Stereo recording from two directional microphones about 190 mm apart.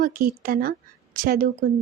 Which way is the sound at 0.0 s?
50° right (ahead or behind).